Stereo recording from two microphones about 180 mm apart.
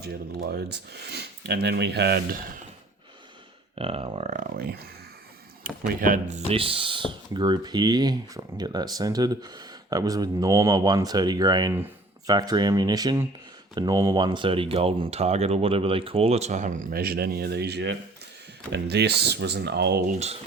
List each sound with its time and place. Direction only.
0.0 s speech: 60° right (ahead or behind)
3.8 s speech: 35° right (ahead or behind); by 4.9 s 55° right (ahead or behind)
5.9 s speech: 45° right (ahead or behind); by 20.0 s 70° right (ahead or behind)
20.1 s speech: 35° right (ahead or behind)